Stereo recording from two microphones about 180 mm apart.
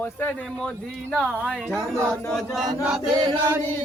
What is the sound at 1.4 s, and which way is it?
A woman's voice, 5° left (ahead or behind).